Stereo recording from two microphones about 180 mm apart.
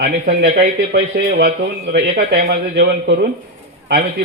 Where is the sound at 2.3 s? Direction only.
60° right (ahead or behind).